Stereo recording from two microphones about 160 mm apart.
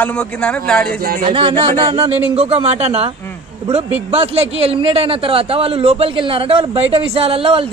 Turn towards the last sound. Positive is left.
turn(degrees=-35)  # may be behind; listen again after turning